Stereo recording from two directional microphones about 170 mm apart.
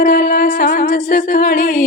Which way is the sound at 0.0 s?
60° left (ahead or behind).